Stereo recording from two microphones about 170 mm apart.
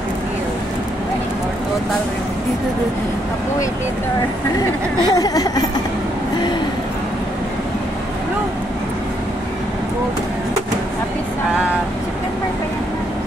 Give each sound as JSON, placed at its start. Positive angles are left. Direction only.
{"t": 5.1, "sound": "speech", "side_deg": 20}